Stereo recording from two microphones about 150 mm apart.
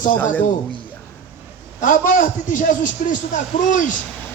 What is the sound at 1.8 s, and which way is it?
A man's voice, 60° left (ahead or behind).